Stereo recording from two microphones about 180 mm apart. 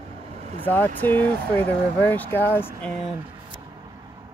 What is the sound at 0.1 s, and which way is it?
Vehicle, 35° right (ahead or behind).